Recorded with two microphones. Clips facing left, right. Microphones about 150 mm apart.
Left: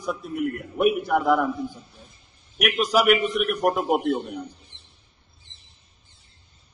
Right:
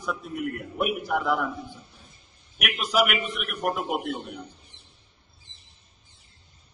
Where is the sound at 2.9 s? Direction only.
40° left (ahead or behind).